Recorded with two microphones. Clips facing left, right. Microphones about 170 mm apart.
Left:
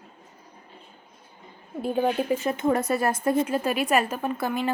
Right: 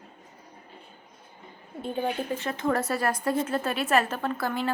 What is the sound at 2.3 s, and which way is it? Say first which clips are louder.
A woman's voice: left 4 dB; 20° left (ahead or behind).